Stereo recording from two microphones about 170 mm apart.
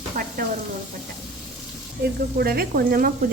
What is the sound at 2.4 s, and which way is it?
Speech, 60° right (ahead or behind).